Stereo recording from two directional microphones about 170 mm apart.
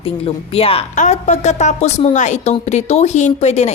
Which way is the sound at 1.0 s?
45° left (ahead or behind).